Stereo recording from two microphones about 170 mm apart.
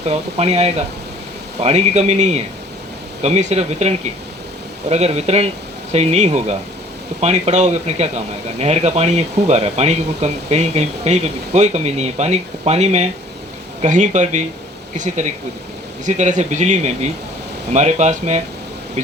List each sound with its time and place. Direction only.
0.1 s speech: 40° right (ahead or behind)